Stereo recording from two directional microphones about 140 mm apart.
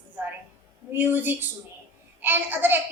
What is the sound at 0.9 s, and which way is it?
A woman's voice, 15° right (ahead or behind).